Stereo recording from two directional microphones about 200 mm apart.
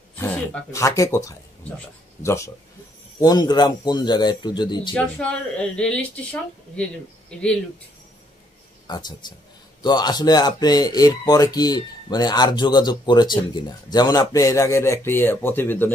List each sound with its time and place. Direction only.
0.1 s speech: 10° left (ahead or behind)
4.9 s a woman's voice: 5° left (ahead or behind)
8.8 s speech: 20° left (ahead or behind)